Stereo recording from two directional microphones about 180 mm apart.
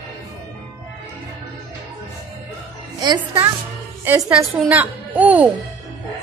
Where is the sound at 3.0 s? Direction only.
25° right (ahead or behind).